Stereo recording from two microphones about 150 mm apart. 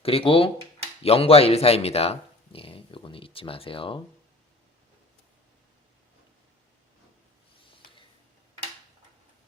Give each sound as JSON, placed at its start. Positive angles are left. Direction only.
{"t": 0.0, "sound": "speech", "side_deg": 40}